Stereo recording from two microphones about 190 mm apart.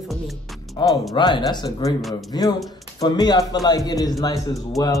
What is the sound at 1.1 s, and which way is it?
A man's voice, 25° left (ahead or behind).